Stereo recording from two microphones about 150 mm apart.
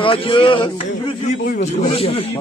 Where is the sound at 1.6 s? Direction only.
45° left (ahead or behind).